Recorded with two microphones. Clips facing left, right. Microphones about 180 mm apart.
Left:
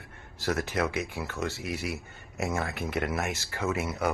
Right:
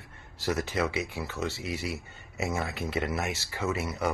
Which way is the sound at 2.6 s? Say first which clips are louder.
Even; 15° left (ahead or behind).